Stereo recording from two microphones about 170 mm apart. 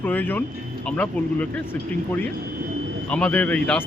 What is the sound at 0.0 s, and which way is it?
Speech, 10° left (ahead or behind).